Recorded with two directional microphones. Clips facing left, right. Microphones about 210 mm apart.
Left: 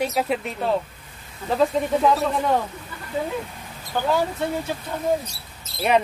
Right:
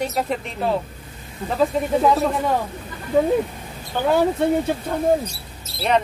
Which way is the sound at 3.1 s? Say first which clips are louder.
Right 9 dB; 55° right (ahead or behind).